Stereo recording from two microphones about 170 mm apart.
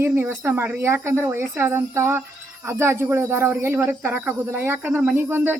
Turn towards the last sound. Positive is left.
turn(degrees=-10)  # may be behind; listen again after turning